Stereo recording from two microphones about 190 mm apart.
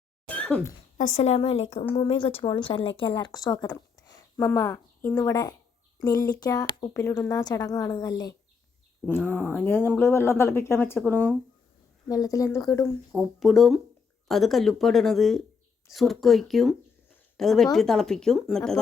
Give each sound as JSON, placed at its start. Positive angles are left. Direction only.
{"t": 0.3, "sound": "a sound", "side_deg": 5}
{"t": 0.9, "sound": "a woman's voice", "side_deg": 40}
{"t": 9.0, "sound": "speech", "side_deg": 10}
{"t": 12.0, "sound": "speech", "side_deg": 20}
{"t": 13.1, "sound": "a woman's voice", "side_deg": 0}